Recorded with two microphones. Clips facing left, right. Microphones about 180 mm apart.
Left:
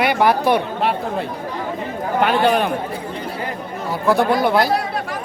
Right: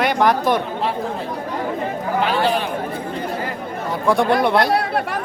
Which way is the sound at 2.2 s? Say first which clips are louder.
Left 4 dB; 60° left (ahead or behind).